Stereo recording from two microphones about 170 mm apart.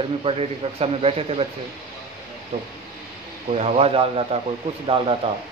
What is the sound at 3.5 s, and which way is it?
A man's voice, 35° right (ahead or behind).